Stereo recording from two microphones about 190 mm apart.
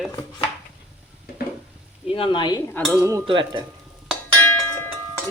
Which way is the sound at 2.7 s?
5° left (ahead or behind).